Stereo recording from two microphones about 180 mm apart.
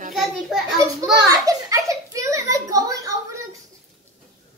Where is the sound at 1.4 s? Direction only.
20° right (ahead or behind).